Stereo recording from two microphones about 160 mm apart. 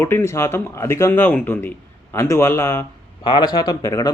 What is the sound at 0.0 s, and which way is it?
Speech, 15° left (ahead or behind).